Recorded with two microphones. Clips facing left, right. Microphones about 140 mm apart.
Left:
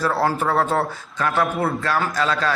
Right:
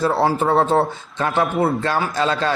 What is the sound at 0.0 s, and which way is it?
A man's voice, 25° right (ahead or behind).